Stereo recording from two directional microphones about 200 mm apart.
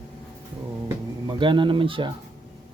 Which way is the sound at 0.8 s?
20° right (ahead or behind).